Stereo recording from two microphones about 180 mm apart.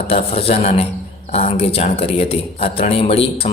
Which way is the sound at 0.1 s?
35° left (ahead or behind).